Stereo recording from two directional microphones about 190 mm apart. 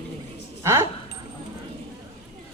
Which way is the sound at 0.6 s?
10° right (ahead or behind).